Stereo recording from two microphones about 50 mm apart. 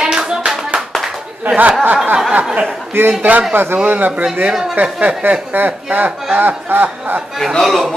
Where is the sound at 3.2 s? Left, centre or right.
Right.